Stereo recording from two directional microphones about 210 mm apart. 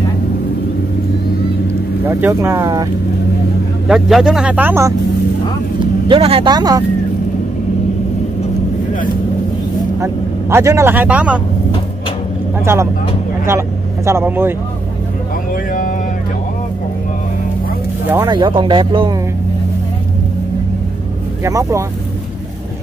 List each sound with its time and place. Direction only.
2.0 s speech: 10° right (ahead or behind)
3.8 s speech: centre (ahead or behind)
6.0 s speech: 25° right (ahead or behind)
8.9 s vehicle: 40° left (ahead or behind)
9.9 s speech: 15° right (ahead or behind)
13.5 s speech: 10° right (ahead or behind)
15.5 s a sound: 40° left (ahead or behind)
18.0 s speech: 10° right (ahead or behind)
18.3 s speech: 20° right (ahead or behind)
21.5 s speech: 15° right (ahead or behind)